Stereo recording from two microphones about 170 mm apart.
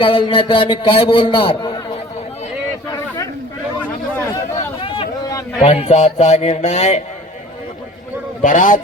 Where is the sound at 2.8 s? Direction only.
20° left (ahead or behind).